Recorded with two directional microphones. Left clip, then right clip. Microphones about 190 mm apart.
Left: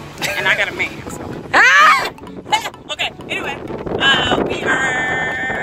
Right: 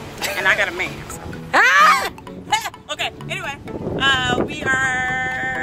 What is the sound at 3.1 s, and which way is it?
Vehicle, centre (ahead or behind).